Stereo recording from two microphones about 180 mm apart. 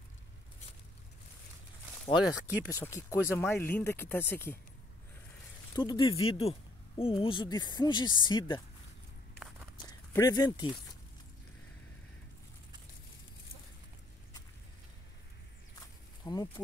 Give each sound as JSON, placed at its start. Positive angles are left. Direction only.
{"t": 2.1, "sound": "speech", "side_deg": -5}
{"t": 2.7, "sound": "speech", "side_deg": 15}
{"t": 5.8, "sound": "speech", "side_deg": 25}
{"t": 10.1, "sound": "speech", "side_deg": 20}
{"t": 16.3, "sound": "speech", "side_deg": 20}